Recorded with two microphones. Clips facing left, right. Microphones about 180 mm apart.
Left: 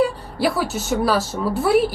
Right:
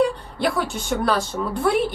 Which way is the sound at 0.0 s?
5° left (ahead or behind).